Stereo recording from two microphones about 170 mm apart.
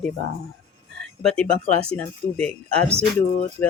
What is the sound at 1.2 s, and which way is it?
Speech, 5° left (ahead or behind).